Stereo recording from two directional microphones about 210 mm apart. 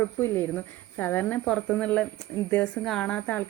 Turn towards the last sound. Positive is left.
turn(degrees=5)  # may be behind; listen again after turning